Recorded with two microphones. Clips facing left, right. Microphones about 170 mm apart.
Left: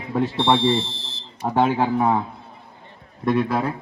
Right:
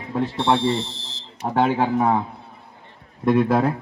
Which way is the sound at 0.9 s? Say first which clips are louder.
Left 1 dB; 55° left (ahead or behind).